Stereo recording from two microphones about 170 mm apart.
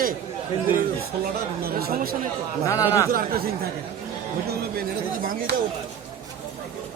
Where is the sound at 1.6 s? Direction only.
60° right (ahead or behind).